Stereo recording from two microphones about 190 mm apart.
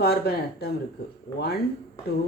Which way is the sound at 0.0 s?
55° left (ahead or behind).